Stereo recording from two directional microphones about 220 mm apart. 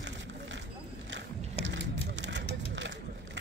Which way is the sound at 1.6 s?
55° right (ahead or behind).